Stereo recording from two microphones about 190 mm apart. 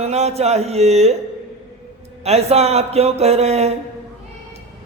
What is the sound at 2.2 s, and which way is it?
A man's voice, 35° right (ahead or behind).